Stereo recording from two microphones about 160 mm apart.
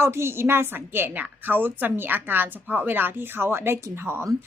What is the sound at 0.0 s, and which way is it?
A woman's voice, 15° right (ahead or behind).